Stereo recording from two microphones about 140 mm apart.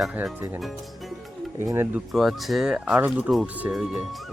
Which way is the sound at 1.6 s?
20° right (ahead or behind).